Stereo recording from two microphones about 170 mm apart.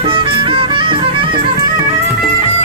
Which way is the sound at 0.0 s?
30° right (ahead or behind).